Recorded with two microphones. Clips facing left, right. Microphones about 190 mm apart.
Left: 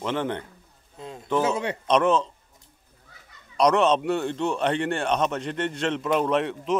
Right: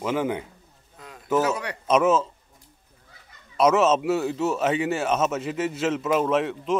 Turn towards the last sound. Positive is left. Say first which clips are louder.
# right 1 dB
turn(degrees=0)  # may be behind; listen again after turning